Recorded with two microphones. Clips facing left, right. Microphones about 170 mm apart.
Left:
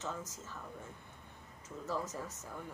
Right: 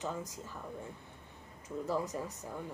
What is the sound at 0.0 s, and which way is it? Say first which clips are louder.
Speech: right 3 dB; 15° right (ahead or behind).